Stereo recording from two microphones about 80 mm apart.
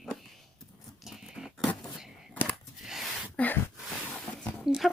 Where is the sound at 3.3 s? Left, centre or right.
Left.